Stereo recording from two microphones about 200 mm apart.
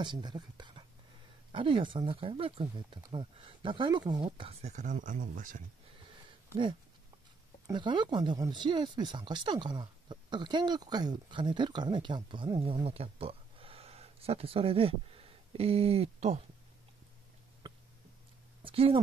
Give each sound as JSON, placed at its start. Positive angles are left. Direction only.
{"t": 0.0, "sound": "speech", "side_deg": -20}
{"t": 6.0, "sound": "a sound", "side_deg": -25}
{"t": 7.6, "sound": "speech", "side_deg": -25}
{"t": 18.6, "sound": "speech", "side_deg": -25}